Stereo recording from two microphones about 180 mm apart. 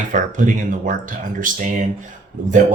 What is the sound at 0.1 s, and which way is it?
Speech, 45° right (ahead or behind).